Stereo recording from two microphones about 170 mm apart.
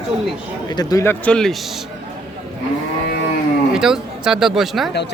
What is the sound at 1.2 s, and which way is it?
Speech, 5° left (ahead or behind).